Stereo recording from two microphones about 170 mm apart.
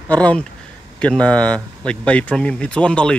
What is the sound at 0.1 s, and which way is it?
Speech, 5° left (ahead or behind).